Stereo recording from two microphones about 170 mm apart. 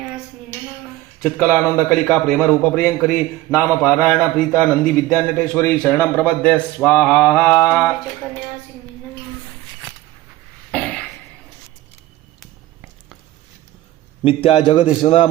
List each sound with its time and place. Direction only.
1.5 s a man's voice: centre (ahead or behind)
10.7 s a sound: 5° left (ahead or behind)
14.3 s a man's voice: 35° left (ahead or behind)